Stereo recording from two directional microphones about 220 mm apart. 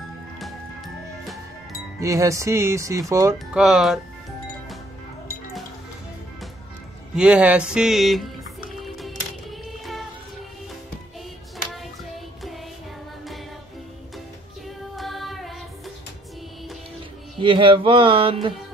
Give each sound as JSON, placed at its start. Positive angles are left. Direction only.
{"t": 2.0, "sound": "speech", "side_deg": -15}
{"t": 3.6, "sound": "speech", "side_deg": 0}
{"t": 7.2, "sound": "speech", "side_deg": -5}
{"t": 8.8, "sound": "music", "side_deg": 0}
{"t": 11.5, "sound": "hands", "side_deg": 0}
{"t": 15.0, "sound": "music", "side_deg": 0}
{"t": 17.4, "sound": "a sound", "side_deg": -25}